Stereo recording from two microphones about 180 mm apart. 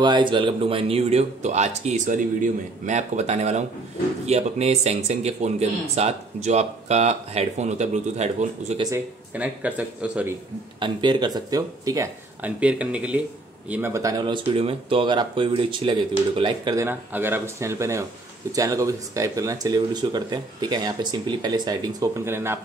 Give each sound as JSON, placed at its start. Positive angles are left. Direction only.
{"t": 0.0, "sound": "speech", "side_deg": -25}
{"t": 8.9, "sound": "speech", "side_deg": -10}
{"t": 10.8, "sound": "speech", "side_deg": -25}
{"t": 12.4, "sound": "speech", "side_deg": -5}
{"t": 16.8, "sound": "speech", "side_deg": -10}